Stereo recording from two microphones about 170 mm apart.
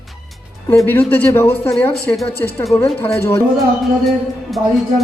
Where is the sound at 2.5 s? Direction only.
20° left (ahead or behind).